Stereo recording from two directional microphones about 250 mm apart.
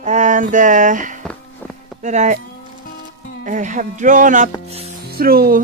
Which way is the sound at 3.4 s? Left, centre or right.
Right.